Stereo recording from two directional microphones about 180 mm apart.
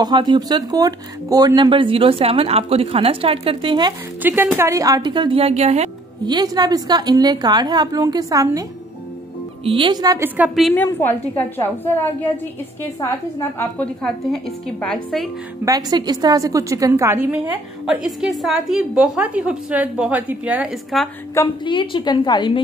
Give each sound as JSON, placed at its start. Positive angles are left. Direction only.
{"t": 0.0, "sound": "speech", "side_deg": -25}
{"t": 4.2, "sound": "speech", "side_deg": -10}
{"t": 6.2, "sound": "speech", "side_deg": -25}
{"t": 9.7, "sound": "a woman's voice", "side_deg": -25}
{"t": 10.7, "sound": "a woman's voice", "side_deg": 10}
{"t": 15.6, "sound": "a woman's voice", "side_deg": -20}
{"t": 21.6, "sound": "a woman's voice", "side_deg": 25}